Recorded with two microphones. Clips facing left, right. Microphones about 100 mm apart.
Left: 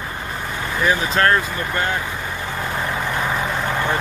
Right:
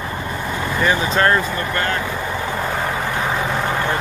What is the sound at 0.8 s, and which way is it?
Speech, centre (ahead or behind).